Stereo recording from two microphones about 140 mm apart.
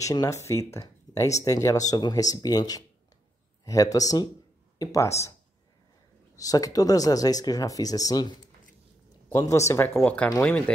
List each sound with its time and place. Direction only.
0.0 s speech: 25° left (ahead or behind)
6.3 s speech: 25° left (ahead or behind)